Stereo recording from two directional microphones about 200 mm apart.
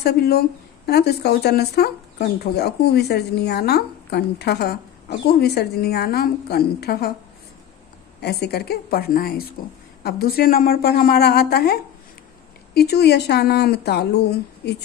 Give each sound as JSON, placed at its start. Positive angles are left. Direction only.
{"t": 0.0, "sound": "speech", "side_deg": 50}
{"t": 8.2, "sound": "speech", "side_deg": 55}